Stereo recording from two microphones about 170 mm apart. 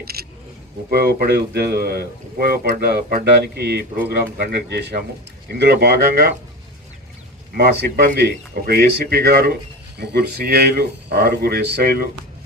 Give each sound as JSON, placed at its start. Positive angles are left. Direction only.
{"t": 0.0, "sound": "speech", "side_deg": -65}
{"t": 7.5, "sound": "speech", "side_deg": -70}